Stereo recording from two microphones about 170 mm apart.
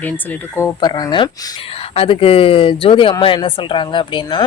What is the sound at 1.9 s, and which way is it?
Speech, 35° left (ahead or behind).